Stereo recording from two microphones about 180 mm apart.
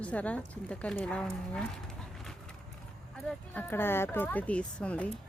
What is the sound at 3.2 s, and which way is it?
A woman's voice, 5° left (ahead or behind).